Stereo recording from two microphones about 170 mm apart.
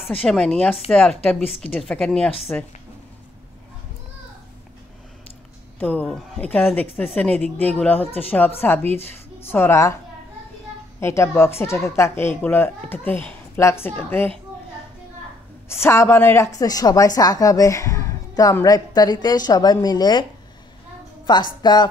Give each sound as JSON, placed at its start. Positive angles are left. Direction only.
{"t": 0.2, "sound": "speech", "side_deg": 5}
{"t": 5.8, "sound": "speech", "side_deg": 10}
{"t": 11.0, "sound": "speech", "side_deg": 15}
{"t": 15.7, "sound": "a woman's voice", "side_deg": 15}
{"t": 21.3, "sound": "a woman's voice", "side_deg": 25}